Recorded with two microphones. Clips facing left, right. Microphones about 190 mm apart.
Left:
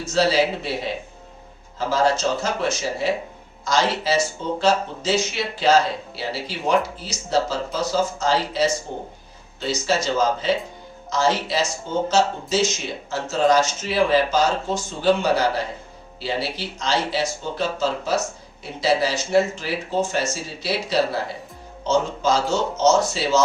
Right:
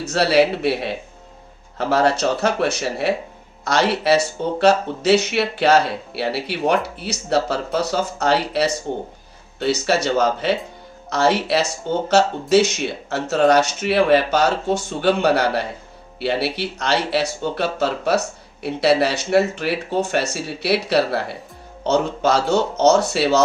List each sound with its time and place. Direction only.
0.0 s speech: 65° right (ahead or behind)